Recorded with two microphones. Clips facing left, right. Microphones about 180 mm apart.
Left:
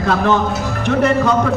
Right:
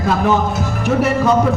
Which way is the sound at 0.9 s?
5° right (ahead or behind).